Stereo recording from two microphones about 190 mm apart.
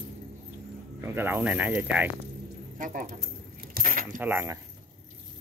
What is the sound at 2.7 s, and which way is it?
Speech, 45° right (ahead or behind).